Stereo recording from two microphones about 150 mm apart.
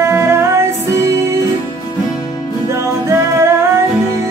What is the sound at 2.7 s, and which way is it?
Music, 20° right (ahead or behind).